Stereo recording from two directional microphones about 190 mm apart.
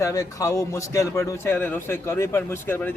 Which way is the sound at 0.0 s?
15° left (ahead or behind).